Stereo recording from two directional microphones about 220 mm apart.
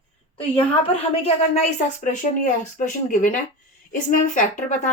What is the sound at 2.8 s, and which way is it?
Speech, 35° left (ahead or behind).